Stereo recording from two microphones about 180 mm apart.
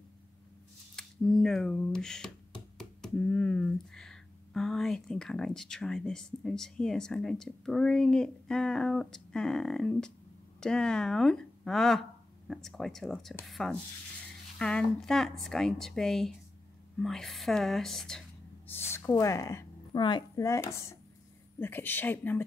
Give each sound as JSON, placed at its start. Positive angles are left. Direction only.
{"t": 0.9, "sound": "speech", "side_deg": 5}
{"t": 18.7, "sound": "a woman's voice", "side_deg": 15}